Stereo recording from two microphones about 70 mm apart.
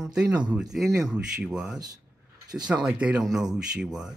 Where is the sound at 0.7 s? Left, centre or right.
Centre.